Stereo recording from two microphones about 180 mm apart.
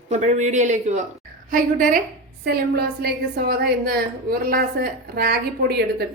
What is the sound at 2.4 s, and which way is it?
A woman's voice, 65° right (ahead or behind).